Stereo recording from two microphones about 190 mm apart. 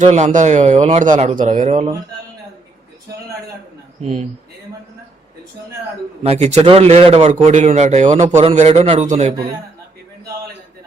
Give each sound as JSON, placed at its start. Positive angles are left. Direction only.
{"t": 0.0, "sound": "a man's voice", "side_deg": -40}
{"t": 4.0, "sound": "a man's voice", "side_deg": -35}
{"t": 6.2, "sound": "a man's voice", "side_deg": -35}